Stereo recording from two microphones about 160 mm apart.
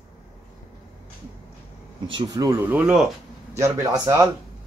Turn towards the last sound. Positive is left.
turn(degrees=-20)  # may be behind; listen again after turning